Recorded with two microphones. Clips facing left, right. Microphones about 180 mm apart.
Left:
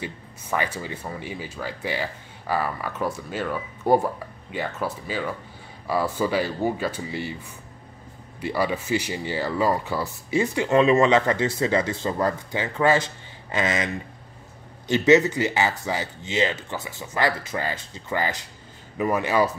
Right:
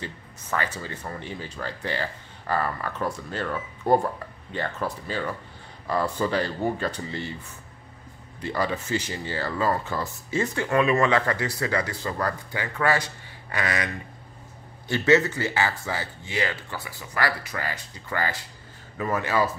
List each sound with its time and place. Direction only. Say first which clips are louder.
0.0 s speech: left 3 dB; 15° left (ahead or behind)
8.4 s speech: left 2 dB; 10° left (ahead or behind)